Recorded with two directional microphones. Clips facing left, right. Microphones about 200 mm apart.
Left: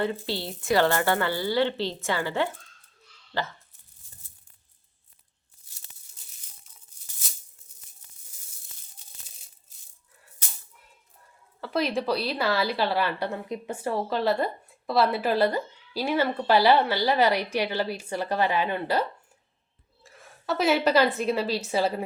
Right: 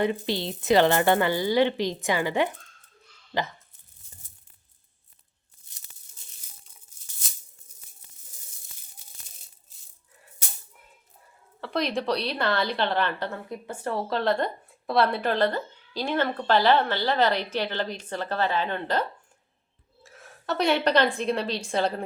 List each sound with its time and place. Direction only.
0.0 s speech: 15° right (ahead or behind)
11.6 s a woman's voice: 5° left (ahead or behind)
13.8 s a woman's voice: 5° left (ahead or behind)
20.0 s a woman's voice: centre (ahead or behind)